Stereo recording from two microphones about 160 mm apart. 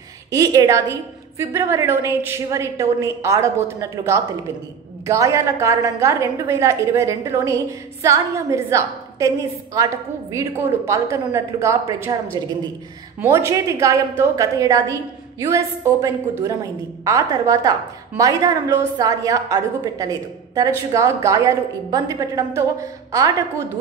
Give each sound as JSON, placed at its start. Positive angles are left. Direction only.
{"t": 0.3, "sound": "a woman's voice", "side_deg": -20}
{"t": 13.2, "sound": "a woman's voice", "side_deg": -15}